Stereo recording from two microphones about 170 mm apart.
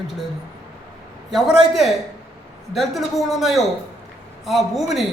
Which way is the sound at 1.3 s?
Centre (ahead or behind).